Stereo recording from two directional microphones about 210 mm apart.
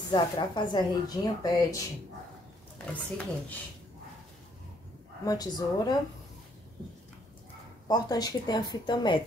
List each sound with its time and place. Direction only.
0.1 s speech: 20° left (ahead or behind)
2.8 s speech: 5° left (ahead or behind)
5.2 s speech: 15° left (ahead or behind)
7.9 s speech: 20° left (ahead or behind)